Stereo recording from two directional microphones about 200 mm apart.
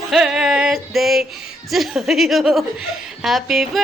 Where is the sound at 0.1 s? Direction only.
Centre (ahead or behind).